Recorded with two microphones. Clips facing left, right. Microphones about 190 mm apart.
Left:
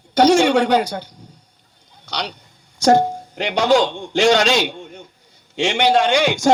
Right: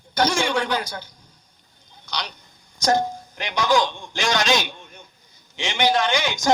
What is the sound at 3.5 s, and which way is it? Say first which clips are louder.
A man's voice: left 5 dB; 65° left (ahead or behind).